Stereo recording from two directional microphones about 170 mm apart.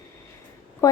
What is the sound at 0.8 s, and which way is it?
Speech, 20° left (ahead or behind).